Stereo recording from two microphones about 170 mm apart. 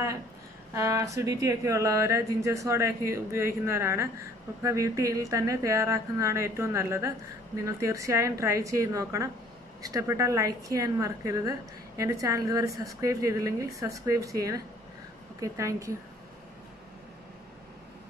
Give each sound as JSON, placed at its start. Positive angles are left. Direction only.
{"t": 0.7, "sound": "speech", "side_deg": -20}